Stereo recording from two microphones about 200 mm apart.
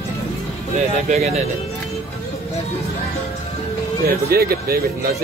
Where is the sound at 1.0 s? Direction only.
35° right (ahead or behind).